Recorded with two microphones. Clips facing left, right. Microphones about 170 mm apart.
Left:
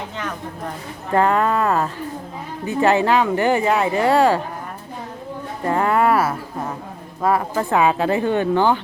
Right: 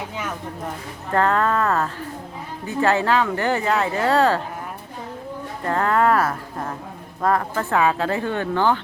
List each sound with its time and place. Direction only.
1.1 s speech: 15° left (ahead or behind)
5.6 s speech: 15° left (ahead or behind)